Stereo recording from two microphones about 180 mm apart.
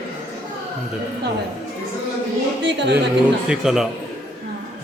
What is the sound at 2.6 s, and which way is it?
Speech, 70° right (ahead or behind).